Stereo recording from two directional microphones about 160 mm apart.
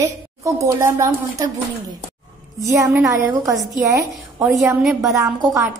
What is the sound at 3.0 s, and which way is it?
A woman's voice, 20° right (ahead or behind).